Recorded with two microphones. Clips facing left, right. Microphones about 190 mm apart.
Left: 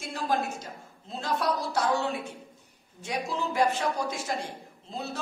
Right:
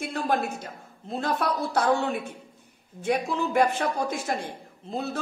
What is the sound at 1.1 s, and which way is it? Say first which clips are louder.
A woman's voice: right 2 dB; 55° right (ahead or behind).